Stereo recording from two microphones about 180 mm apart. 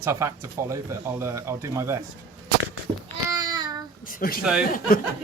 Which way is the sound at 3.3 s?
20° right (ahead or behind).